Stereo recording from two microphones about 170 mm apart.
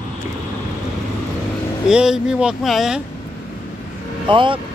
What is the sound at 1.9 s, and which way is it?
Speech, 5° right (ahead or behind).